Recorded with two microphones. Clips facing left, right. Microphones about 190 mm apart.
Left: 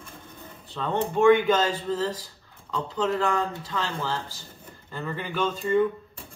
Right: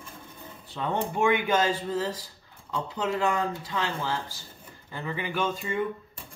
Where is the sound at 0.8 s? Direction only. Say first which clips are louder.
Left 3 dB; 10° right (ahead or behind).